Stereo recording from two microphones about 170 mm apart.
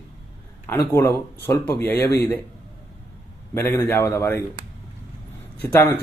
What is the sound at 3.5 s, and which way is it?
Speech, 15° left (ahead or behind).